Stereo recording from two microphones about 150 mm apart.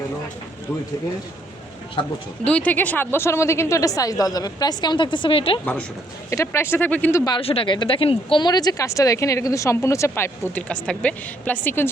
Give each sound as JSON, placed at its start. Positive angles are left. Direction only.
{"t": 2.4, "sound": "speech", "side_deg": 10}
{"t": 6.3, "sound": "speech", "side_deg": 20}
{"t": 7.3, "sound": "speech", "side_deg": 35}